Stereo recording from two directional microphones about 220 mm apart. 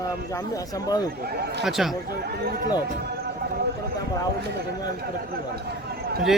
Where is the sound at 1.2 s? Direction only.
45° right (ahead or behind).